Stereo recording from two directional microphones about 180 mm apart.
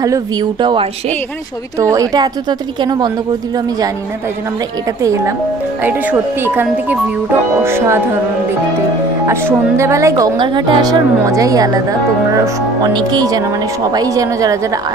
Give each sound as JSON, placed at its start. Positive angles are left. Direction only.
{"t": 0.0, "sound": "speech", "side_deg": -20}
{"t": 5.0, "sound": "speech", "side_deg": -15}
{"t": 9.3, "sound": "speech", "side_deg": -15}